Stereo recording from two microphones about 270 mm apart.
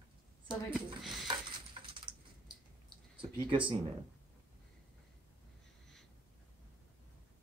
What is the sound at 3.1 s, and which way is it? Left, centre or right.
Speech, centre.